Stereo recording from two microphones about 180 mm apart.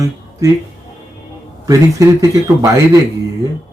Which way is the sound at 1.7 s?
20° right (ahead or behind).